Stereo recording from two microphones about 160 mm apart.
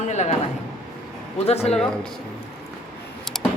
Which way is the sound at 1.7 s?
5° left (ahead or behind).